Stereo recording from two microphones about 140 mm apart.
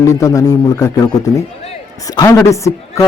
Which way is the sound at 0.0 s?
25° left (ahead or behind).